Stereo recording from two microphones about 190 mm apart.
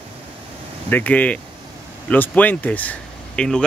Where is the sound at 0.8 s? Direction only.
10° left (ahead or behind).